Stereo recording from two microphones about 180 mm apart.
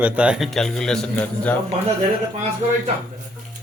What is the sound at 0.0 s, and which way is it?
A man's voice, 5° right (ahead or behind).